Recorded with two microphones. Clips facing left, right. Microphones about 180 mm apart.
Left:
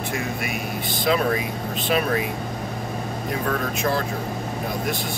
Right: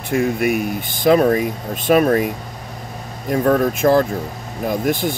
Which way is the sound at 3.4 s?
50° right (ahead or behind).